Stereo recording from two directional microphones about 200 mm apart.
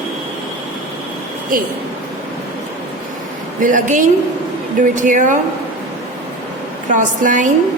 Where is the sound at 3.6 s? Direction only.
40° right (ahead or behind).